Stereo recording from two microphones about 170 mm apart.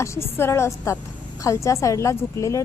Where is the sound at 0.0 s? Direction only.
15° left (ahead or behind).